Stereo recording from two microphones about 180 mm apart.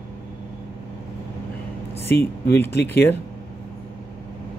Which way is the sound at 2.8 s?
10° left (ahead or behind).